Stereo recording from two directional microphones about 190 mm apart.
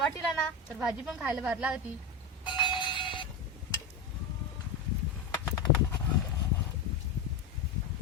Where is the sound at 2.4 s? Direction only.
25° left (ahead or behind).